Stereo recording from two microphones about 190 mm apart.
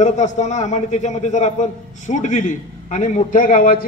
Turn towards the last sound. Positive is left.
turn(degrees=45)  # may be behind; listen again after turning